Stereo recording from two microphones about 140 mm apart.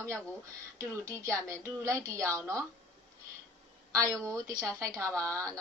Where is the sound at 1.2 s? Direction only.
20° right (ahead or behind).